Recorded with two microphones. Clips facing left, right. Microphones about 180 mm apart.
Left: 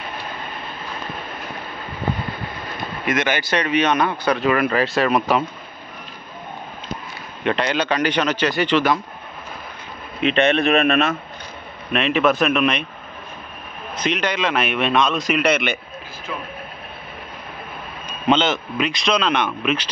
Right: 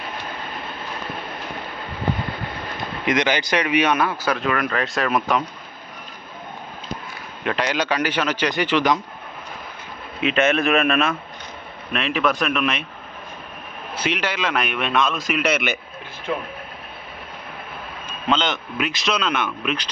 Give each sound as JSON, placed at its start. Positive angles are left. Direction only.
{"t": 3.1, "sound": "speech", "side_deg": -20}
{"t": 7.4, "sound": "a man's voice", "side_deg": -5}
{"t": 10.3, "sound": "speech", "side_deg": 35}
{"t": 11.9, "sound": "speech", "side_deg": 0}
{"t": 13.9, "sound": "speech", "side_deg": -10}
{"t": 16.3, "sound": "speech", "side_deg": -50}
{"t": 18.0, "sound": "speech", "side_deg": 0}